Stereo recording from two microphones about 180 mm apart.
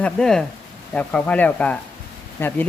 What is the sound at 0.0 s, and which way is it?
Speech, 5° left (ahead or behind).